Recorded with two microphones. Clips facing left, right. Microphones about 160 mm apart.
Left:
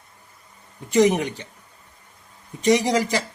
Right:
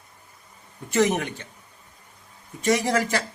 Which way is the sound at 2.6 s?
15° left (ahead or behind).